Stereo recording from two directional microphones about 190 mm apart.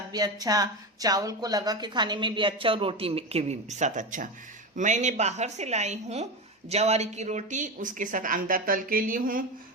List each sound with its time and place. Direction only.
0.1 s a woman's voice: 20° right (ahead or behind); by 9.4 s 45° right (ahead or behind)